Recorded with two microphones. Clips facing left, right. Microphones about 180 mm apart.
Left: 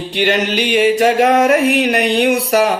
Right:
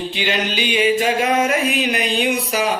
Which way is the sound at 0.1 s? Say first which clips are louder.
Left 6 dB; 70° left (ahead or behind).